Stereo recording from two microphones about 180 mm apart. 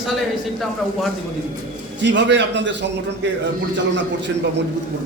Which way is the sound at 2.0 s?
75° right (ahead or behind).